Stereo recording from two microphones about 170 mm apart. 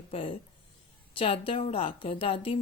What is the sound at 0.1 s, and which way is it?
A woman's voice, 30° left (ahead or behind).